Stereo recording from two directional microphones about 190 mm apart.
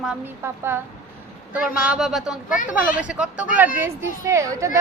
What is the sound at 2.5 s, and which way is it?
Speech, 45° left (ahead or behind).